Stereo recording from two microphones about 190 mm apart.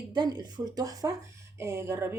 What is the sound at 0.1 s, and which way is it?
Speech, 20° right (ahead or behind).